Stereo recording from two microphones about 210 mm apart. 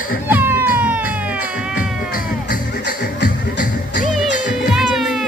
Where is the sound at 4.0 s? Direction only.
35° left (ahead or behind).